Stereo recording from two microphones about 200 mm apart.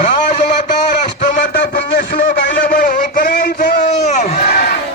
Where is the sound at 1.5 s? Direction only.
45° left (ahead or behind).